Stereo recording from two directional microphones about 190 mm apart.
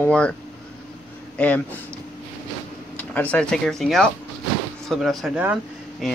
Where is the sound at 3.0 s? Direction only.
10° left (ahead or behind).